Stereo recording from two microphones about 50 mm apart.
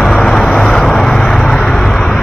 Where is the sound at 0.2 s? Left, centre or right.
Centre.